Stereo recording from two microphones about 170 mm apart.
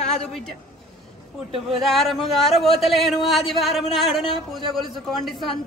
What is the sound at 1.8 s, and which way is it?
A man's voice, centre (ahead or behind).